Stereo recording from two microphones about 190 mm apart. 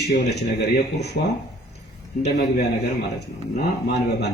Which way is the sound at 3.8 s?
60° left (ahead or behind).